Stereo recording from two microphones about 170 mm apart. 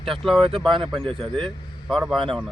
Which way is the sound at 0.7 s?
30° right (ahead or behind).